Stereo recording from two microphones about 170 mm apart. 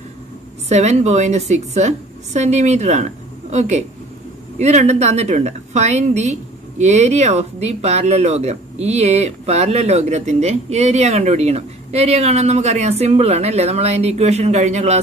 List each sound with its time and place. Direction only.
0.7 s speech: 40° right (ahead or behind)